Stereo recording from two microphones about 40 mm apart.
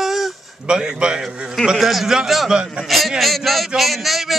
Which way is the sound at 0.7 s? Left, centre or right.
Right.